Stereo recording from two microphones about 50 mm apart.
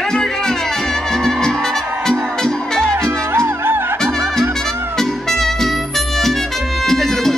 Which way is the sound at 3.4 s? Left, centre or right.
Right.